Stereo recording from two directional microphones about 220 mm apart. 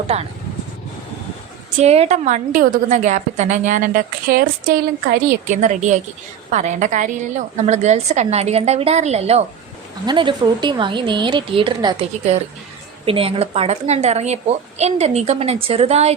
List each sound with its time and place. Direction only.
0.1 s a woman's voice: 30° right (ahead or behind)
1.8 s a woman's voice: 30° right (ahead or behind)